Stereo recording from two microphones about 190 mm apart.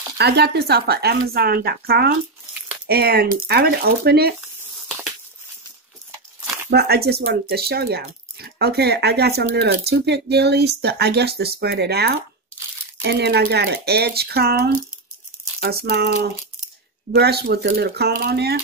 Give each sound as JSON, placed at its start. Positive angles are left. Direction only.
{"t": 0.2, "sound": "speech", "side_deg": -60}
{"t": 6.7, "sound": "speech", "side_deg": -55}